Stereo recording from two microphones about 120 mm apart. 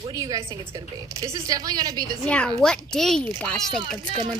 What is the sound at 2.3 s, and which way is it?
A child's voice, 10° left (ahead or behind).